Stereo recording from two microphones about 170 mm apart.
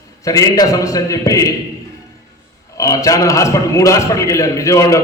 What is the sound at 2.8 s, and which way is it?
A man's voice, 20° left (ahead or behind).